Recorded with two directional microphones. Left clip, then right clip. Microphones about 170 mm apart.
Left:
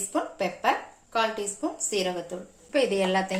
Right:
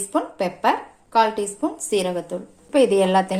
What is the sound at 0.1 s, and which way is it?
Speech, 50° right (ahead or behind).